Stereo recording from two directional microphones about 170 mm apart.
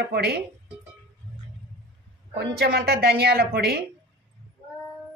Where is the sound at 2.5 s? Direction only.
70° right (ahead or behind).